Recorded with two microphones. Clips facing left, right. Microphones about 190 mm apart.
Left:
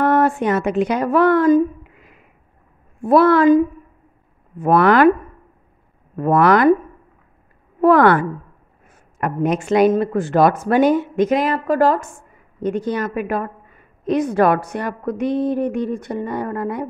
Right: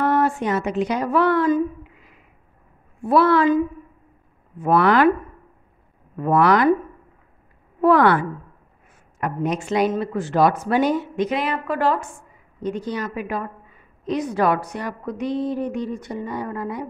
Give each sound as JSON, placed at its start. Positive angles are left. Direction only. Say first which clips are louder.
{"t": 0.0, "sound": "speech", "louder": "left 4 dB", "side_deg": 55}
{"t": 6.1, "sound": "speech", "louder": "left 3 dB", "side_deg": 50}
{"t": 7.8, "sound": "speech", "louder": "left 3 dB", "side_deg": 50}
{"t": 12.6, "sound": "a woman's voice", "louder": "left 5 dB", "side_deg": 55}